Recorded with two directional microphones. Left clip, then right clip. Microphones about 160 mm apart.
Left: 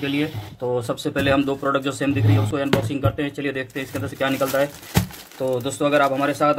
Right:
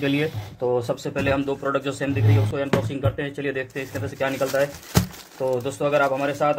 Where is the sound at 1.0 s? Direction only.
25° left (ahead or behind).